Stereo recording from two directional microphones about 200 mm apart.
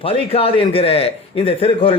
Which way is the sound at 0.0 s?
30° left (ahead or behind).